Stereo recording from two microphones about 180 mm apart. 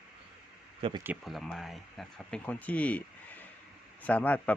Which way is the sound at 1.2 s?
Centre (ahead or behind).